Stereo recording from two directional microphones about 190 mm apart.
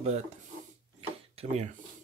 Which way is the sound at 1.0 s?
35° right (ahead or behind).